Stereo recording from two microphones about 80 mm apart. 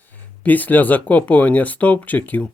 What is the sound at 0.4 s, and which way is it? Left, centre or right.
Speech, left.